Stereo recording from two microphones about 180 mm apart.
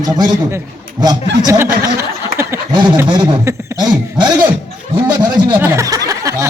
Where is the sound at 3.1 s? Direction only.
25° right (ahead or behind).